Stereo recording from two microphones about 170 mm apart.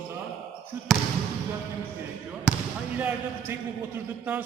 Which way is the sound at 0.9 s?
Centre (ahead or behind).